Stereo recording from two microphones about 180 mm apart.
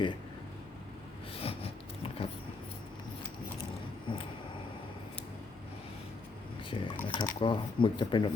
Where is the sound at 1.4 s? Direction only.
35° left (ahead or behind).